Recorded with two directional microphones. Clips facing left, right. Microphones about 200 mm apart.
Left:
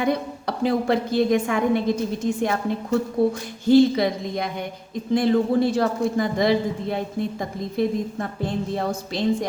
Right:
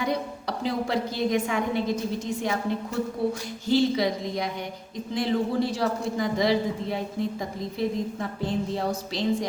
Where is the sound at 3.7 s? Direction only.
55° left (ahead or behind).